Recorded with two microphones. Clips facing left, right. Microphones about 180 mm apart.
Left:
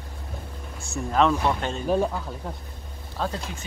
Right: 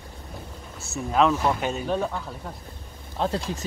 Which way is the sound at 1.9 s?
10° left (ahead or behind).